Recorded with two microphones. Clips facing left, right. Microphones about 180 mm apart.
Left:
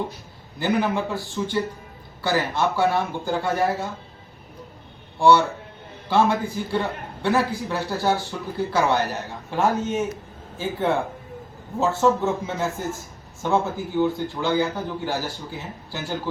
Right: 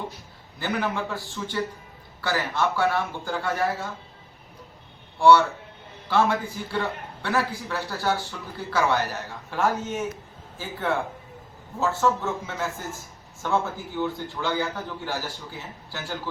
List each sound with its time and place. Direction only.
0.6 s a man's voice: 15° left (ahead or behind)
6.1 s a man's voice: 15° left (ahead or behind)